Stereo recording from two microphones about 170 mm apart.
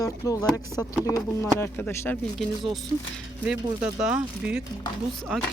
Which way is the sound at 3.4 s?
5° right (ahead or behind).